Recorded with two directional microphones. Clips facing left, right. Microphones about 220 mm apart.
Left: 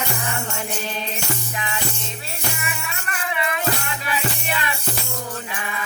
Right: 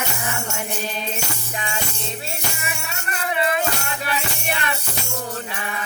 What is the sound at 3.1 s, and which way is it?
Music, 35° right (ahead or behind).